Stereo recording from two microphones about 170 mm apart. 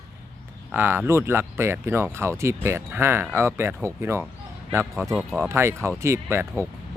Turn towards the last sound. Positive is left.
turn(degrees=-15)  # may be behind; listen again after turning